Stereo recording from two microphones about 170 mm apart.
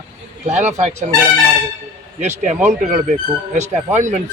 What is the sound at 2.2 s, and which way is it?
A man's voice, 45° right (ahead or behind).